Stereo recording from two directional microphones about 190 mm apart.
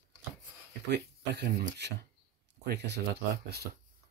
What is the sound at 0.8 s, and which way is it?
Speech, 60° right (ahead or behind).